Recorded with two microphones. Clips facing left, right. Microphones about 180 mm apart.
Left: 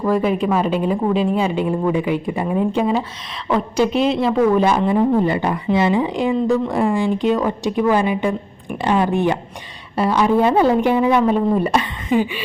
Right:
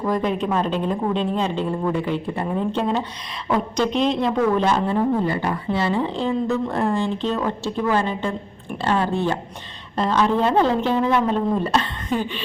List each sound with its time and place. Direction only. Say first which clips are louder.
0.0 s a woman's voice: left 4 dB; 5° left (ahead or behind)